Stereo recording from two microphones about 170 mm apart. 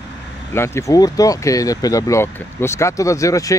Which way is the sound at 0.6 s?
15° left (ahead or behind).